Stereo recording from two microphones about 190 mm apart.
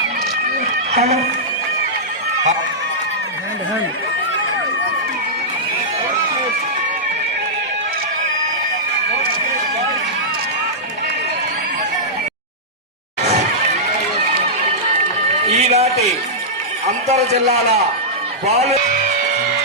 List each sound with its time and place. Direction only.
0.9 s speech: 35° right (ahead or behind)
15.5 s a sound: 35° right (ahead or behind)
18.4 s music: 35° right (ahead or behind)